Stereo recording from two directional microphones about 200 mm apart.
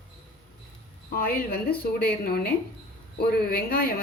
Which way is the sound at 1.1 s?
45° left (ahead or behind).